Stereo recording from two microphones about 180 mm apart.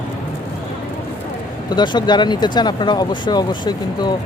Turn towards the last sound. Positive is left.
turn(degrees=25)  # may be behind; listen again after turning